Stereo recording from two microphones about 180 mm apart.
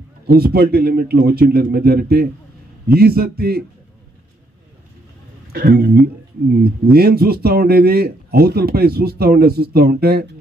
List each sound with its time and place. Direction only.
0.3 s speech: 60° right (ahead or behind)
5.5 s speech: 55° right (ahead or behind)